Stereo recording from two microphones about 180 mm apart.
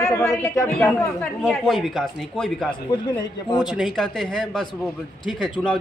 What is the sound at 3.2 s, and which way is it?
Speech, 25° left (ahead or behind).